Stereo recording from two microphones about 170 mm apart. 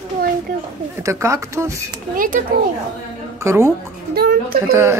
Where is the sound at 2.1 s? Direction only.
55° right (ahead or behind).